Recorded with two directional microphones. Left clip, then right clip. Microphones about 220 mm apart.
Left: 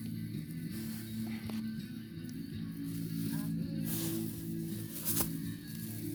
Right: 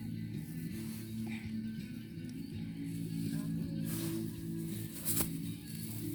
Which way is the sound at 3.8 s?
50° left (ahead or behind).